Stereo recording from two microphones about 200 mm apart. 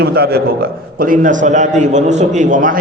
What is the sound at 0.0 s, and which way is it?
A man's voice, 50° right (ahead or behind).